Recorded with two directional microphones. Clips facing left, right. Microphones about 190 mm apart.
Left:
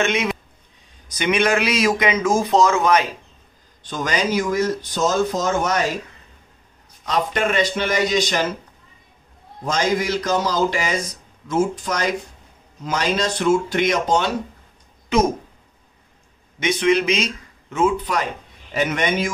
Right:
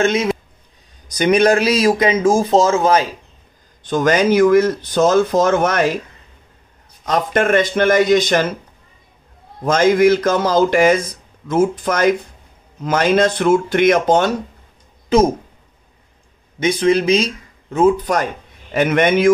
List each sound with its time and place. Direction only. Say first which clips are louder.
0.0 s speech: right 5 dB; 35° right (ahead or behind)
3.8 s speech: right 8 dB; 50° right (ahead or behind)
7.1 s speech: right 5 dB; 50° right (ahead or behind)
9.7 s speech: right 9 dB; 55° right (ahead or behind)
16.5 s speech: right 3 dB; 30° right (ahead or behind); by 19.3 s 55° right (ahead or behind)